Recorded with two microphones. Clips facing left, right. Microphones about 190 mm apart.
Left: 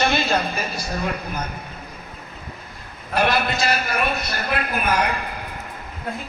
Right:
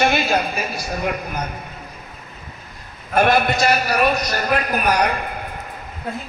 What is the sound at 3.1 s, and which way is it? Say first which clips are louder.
A man's voice: right 4 dB; 50° right (ahead or behind).